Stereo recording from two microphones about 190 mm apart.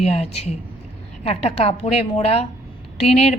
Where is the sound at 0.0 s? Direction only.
35° left (ahead or behind).